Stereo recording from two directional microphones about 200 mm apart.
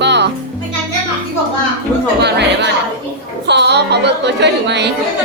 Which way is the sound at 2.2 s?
60° right (ahead or behind).